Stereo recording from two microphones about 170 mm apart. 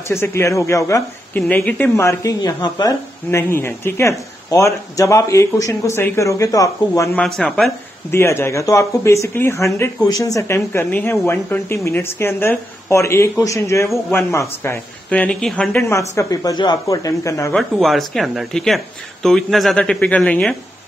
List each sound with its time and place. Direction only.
0.1 s speech: 15° left (ahead or behind)
7.2 s speech: 5° left (ahead or behind)
8.1 s speech: 15° left (ahead or behind)
17.6 s speech: centre (ahead or behind)